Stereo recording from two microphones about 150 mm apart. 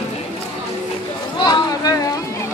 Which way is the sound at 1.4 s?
25° left (ahead or behind).